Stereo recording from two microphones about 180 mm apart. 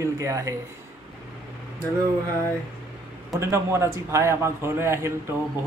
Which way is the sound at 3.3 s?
15° right (ahead or behind).